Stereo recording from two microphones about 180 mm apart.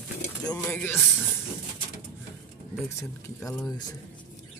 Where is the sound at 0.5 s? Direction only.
10° left (ahead or behind).